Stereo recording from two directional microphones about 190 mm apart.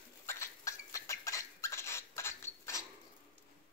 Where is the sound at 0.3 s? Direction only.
15° left (ahead or behind).